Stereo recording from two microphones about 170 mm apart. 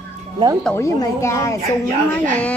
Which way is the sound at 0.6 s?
15° left (ahead or behind).